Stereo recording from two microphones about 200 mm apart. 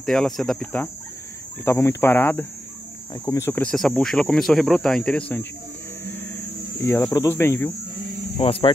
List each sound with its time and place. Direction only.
0.0 s speech: centre (ahead or behind)
6.8 s speech: 10° left (ahead or behind)
8.4 s speech: 25° left (ahead or behind)